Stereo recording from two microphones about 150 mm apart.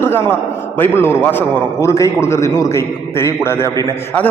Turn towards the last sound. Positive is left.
turn(degrees=10)  # may be behind; listen again after turning